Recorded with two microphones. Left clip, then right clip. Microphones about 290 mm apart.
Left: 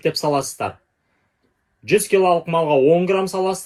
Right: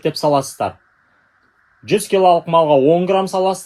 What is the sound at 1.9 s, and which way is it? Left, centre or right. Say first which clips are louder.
Speech: right 3 dB; right.